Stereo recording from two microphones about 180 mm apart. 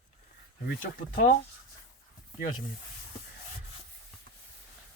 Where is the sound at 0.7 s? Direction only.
50° left (ahead or behind).